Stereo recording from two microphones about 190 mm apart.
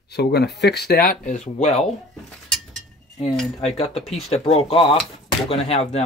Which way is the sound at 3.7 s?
30° left (ahead or behind).